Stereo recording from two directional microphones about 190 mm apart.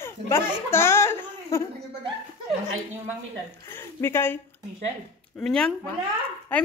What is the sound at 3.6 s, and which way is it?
Speech, 10° left (ahead or behind).